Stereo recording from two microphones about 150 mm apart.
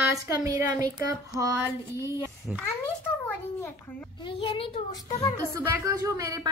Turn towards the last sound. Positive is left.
turn(degrees=-20)  # may be behind; listen again after turning